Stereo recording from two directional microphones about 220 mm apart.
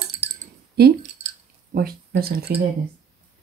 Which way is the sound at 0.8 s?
45° right (ahead or behind).